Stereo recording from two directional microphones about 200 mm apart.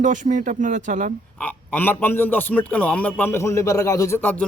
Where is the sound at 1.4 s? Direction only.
10° left (ahead or behind).